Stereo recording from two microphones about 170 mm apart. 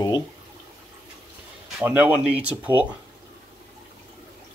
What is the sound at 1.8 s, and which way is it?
Speech, 10° right (ahead or behind).